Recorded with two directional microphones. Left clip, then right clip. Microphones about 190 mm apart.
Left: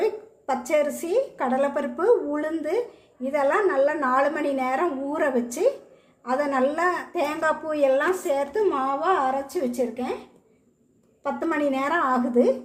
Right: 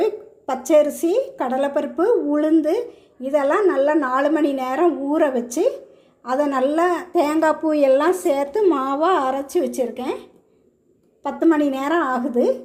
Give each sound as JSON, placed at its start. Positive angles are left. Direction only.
{"t": 0.0, "sound": "a woman's voice", "side_deg": -25}
{"t": 11.2, "sound": "a woman's voice", "side_deg": -25}